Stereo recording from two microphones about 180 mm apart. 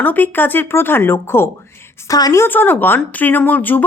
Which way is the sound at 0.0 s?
10° left (ahead or behind).